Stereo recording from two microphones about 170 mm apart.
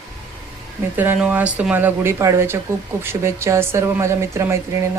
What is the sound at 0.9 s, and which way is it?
Speech, 10° right (ahead or behind).